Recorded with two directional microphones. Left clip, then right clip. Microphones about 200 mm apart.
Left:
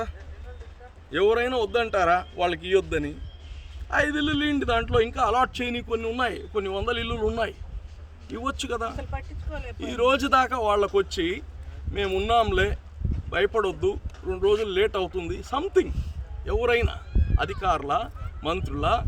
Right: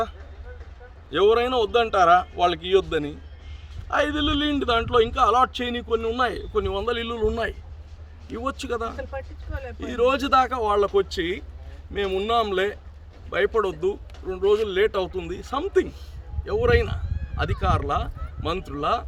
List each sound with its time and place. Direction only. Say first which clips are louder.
1.1 s a man's voice: right 3 dB; 5° left (ahead or behind)
9.5 s speech: right 1 dB; 40° left (ahead or behind)
9.8 s a man's voice: right 1 dB; 5° left (ahead or behind)